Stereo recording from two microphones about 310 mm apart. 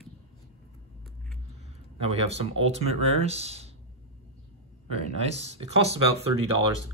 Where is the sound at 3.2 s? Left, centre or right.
Centre.